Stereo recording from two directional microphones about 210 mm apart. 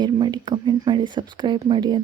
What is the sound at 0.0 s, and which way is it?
Speech, 20° right (ahead or behind).